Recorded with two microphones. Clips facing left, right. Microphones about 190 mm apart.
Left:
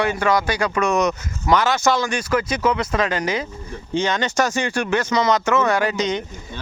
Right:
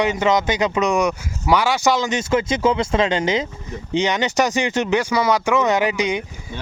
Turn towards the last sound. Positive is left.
turn(degrees=-10)  # may be behind; listen again after turning